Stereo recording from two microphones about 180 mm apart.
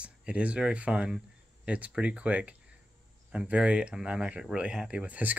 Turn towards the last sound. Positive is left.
turn(degrees=-10)  # may be behind; listen again after turning